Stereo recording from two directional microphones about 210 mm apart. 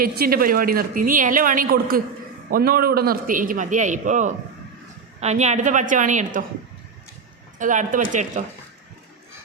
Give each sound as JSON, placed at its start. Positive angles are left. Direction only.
{"t": 0.0, "sound": "a woman's voice", "side_deg": -45}
{"t": 7.6, "sound": "a man's voice", "side_deg": -40}